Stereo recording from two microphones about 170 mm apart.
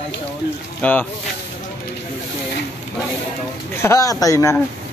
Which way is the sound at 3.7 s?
15° left (ahead or behind).